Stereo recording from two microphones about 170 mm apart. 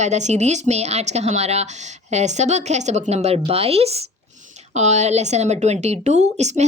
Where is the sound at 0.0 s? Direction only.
45° right (ahead or behind).